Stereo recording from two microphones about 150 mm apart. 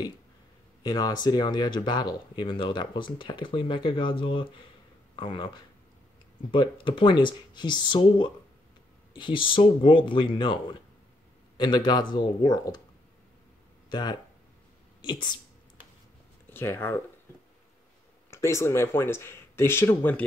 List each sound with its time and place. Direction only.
0.8 s speech: 25° left (ahead or behind)
13.8 s speech: 30° left (ahead or behind)
16.4 s speech: 15° left (ahead or behind)
18.3 s speech: 20° left (ahead or behind)